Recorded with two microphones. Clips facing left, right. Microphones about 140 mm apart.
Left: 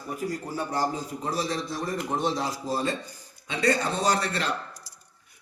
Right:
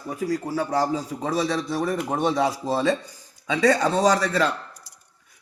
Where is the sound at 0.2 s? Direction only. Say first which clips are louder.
Right 7 dB; 90° right; by 2.9 s 75° right (ahead or behind).